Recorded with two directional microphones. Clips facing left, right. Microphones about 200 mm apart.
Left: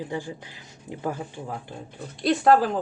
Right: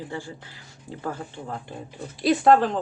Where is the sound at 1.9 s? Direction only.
5° right (ahead or behind).